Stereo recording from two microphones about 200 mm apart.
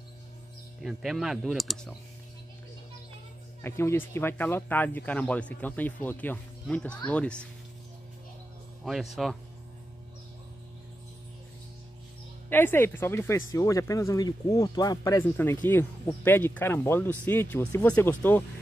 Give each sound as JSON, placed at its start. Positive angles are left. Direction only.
{"t": 0.7, "sound": "speech", "side_deg": 0}
{"t": 3.6, "sound": "speech", "side_deg": 10}
{"t": 8.8, "sound": "speech", "side_deg": 0}
{"t": 12.4, "sound": "speech", "side_deg": 10}